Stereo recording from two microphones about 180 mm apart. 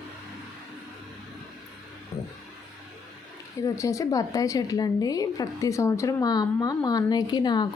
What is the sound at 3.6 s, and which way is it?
A woman's voice, 15° left (ahead or behind).